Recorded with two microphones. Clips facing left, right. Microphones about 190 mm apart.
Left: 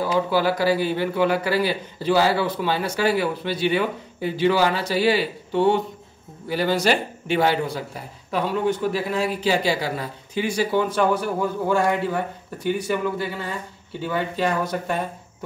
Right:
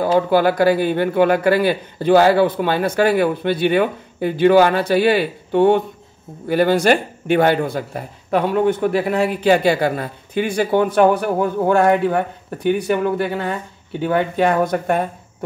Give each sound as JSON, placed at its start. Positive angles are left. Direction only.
{"t": 0.0, "sound": "a man's voice", "side_deg": -55}